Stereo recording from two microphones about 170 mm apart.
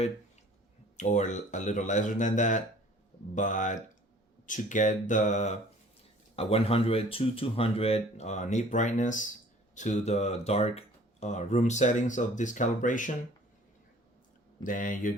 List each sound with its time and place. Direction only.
0.9 s speech: 45° left (ahead or behind)
14.6 s speech: 50° left (ahead or behind)